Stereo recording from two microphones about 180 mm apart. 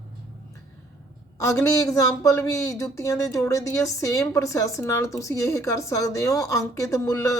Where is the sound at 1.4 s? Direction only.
15° left (ahead or behind).